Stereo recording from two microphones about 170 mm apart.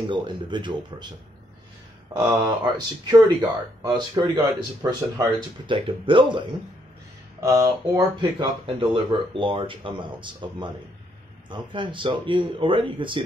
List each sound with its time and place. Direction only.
0.0 s speech: 25° right (ahead or behind)
2.1 s speech: 25° right (ahead or behind)
7.3 s speech: 20° right (ahead or behind)